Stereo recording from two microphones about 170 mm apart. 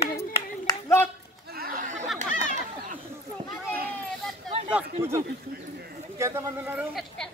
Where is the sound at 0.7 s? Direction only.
15° left (ahead or behind).